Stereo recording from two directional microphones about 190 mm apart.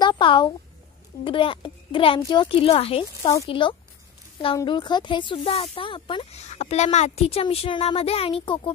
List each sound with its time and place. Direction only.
0.0 s a sound: 25° left (ahead or behind)
1.2 s speech: 25° left (ahead or behind)
3.2 s speech: 15° left (ahead or behind)